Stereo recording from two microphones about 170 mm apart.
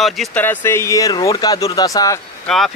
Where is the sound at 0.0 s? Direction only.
Centre (ahead or behind).